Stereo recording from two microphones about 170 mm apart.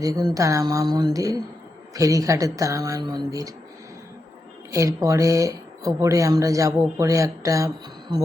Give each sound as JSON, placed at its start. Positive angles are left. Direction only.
{"t": 0.0, "sound": "speech", "side_deg": -20}
{"t": 4.7, "sound": "speech", "side_deg": -20}